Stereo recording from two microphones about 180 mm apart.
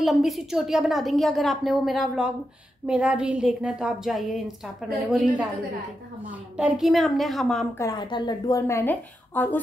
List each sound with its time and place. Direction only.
0.0 s a woman's voice: centre (ahead or behind)
6.5 s a woman's voice: 5° right (ahead or behind)
7.8 s a woman's voice: 25° left (ahead or behind)